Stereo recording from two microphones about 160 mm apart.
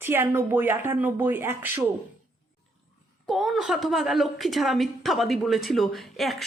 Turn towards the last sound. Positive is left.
turn(degrees=0)  # may be behind; listen again after turning